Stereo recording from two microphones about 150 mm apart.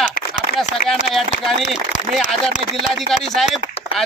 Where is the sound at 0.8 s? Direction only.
55° left (ahead or behind).